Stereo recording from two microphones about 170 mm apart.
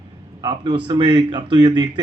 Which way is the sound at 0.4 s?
25° right (ahead or behind).